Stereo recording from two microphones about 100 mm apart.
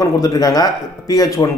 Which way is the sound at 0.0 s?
35° left (ahead or behind).